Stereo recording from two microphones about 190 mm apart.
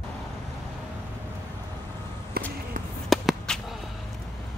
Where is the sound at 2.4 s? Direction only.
55° right (ahead or behind).